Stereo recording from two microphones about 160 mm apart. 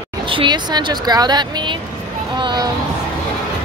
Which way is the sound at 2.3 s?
25° right (ahead or behind).